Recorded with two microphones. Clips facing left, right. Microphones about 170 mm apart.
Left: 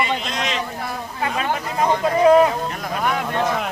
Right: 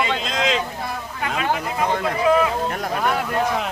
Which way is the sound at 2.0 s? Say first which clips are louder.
Left 6 dB; 40° left (ahead or behind).